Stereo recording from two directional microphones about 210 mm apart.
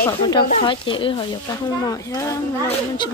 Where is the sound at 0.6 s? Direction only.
25° left (ahead or behind).